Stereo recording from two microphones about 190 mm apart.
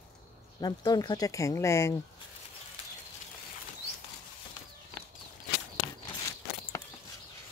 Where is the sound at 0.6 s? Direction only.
20° left (ahead or behind).